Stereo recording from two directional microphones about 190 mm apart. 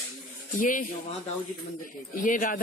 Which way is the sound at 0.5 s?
45° left (ahead or behind).